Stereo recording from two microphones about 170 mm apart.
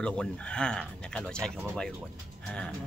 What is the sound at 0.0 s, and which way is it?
Speech, 5° left (ahead or behind).